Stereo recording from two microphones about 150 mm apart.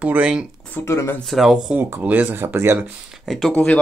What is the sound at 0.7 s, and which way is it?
Speech, 15° left (ahead or behind).